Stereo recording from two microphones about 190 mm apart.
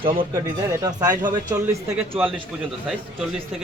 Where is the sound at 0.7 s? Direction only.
20° right (ahead or behind).